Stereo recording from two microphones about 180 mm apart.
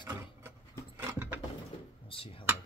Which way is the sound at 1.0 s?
15° right (ahead or behind).